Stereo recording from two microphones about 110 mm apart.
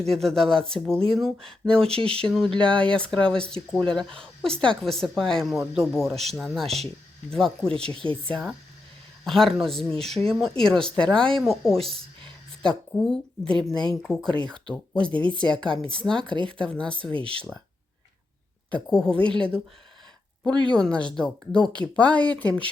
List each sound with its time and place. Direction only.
0.0 s speech: 5° left (ahead or behind)
1.9 s speech: 60° right (ahead or behind)
2.2 s speech: 5° left (ahead or behind)
16.3 s speech: 45° right (ahead or behind)
16.6 s speech: 10° left (ahead or behind)
17.2 s speech: 55° right (ahead or behind)
18.7 s speech: 5° left (ahead or behind)
20.7 s speech: 5° left (ahead or behind)